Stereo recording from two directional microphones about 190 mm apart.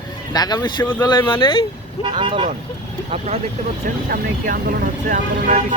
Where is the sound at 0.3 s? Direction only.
20° left (ahead or behind).